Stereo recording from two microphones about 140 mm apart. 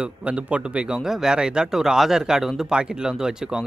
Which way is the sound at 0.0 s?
10° right (ahead or behind).